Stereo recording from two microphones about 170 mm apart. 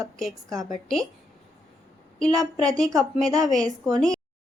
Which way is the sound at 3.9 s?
5° left (ahead or behind).